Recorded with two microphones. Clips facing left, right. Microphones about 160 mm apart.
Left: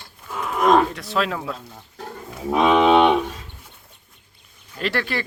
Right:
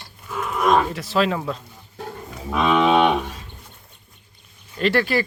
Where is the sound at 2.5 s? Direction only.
30° left (ahead or behind).